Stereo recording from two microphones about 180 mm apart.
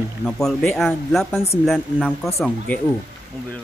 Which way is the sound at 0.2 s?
5° left (ahead or behind).